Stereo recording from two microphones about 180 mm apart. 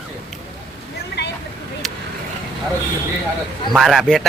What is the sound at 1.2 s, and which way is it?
Vehicle, 75° left (ahead or behind).